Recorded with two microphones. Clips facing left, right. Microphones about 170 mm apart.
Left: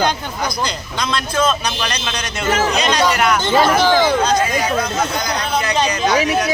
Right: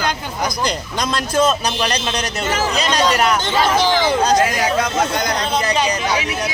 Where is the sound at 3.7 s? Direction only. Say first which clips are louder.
Left 2 dB; 15° right (ahead or behind).